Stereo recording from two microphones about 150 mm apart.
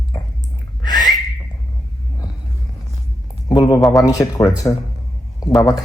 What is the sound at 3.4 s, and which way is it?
Speech, 25° left (ahead or behind).